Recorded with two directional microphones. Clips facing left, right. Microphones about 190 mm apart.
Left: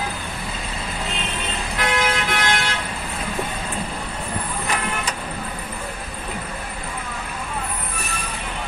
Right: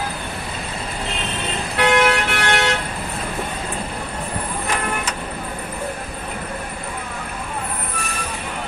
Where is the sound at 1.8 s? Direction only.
65° right (ahead or behind).